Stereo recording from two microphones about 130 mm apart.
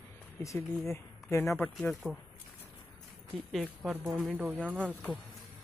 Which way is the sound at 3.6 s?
15° right (ahead or behind).